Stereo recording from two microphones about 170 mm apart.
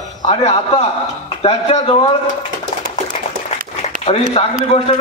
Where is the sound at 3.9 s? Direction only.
50° right (ahead or behind).